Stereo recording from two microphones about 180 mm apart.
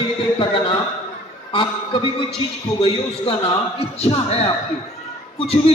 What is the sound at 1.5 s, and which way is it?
A man's voice, 30° left (ahead or behind).